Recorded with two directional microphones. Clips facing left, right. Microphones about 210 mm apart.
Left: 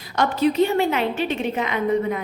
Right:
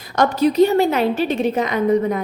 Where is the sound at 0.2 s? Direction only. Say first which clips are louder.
Right 4 dB; 40° right (ahead or behind).